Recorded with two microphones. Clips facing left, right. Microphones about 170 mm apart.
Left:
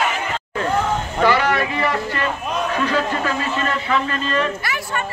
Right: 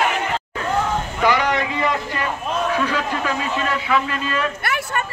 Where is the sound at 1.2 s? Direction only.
15° right (ahead or behind).